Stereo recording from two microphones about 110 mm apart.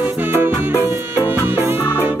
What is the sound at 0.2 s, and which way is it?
Music, 20° right (ahead or behind).